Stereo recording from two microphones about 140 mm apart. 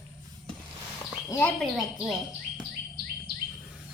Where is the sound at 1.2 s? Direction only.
15° left (ahead or behind).